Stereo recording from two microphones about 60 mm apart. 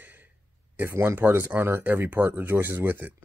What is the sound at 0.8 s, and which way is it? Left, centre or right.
Speech, right.